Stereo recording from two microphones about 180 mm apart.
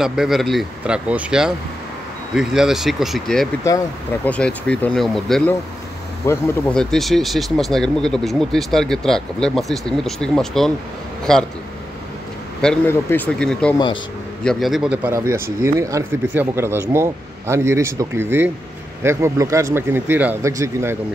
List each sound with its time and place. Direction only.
0.0 s speech: 5° right (ahead or behind)
3.6 s speech: 15° left (ahead or behind)
4.3 s speech: 5° left (ahead or behind)
6.2 s speech: 15° left (ahead or behind)
6.7 s speech: centre (ahead or behind)
12.6 s speech: 10° left (ahead or behind); by 21.0 s 15° right (ahead or behind)